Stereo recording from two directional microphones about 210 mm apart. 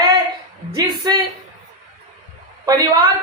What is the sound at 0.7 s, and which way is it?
Speech, 15° right (ahead or behind).